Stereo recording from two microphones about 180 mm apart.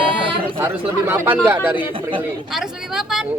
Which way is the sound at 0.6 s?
10° right (ahead or behind).